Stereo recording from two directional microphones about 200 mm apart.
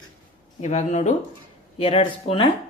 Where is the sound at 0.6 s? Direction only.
35° left (ahead or behind).